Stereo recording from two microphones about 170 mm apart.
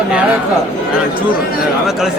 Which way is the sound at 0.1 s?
5° right (ahead or behind).